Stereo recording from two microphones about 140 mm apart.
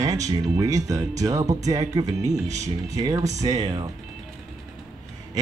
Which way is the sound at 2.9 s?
25° right (ahead or behind).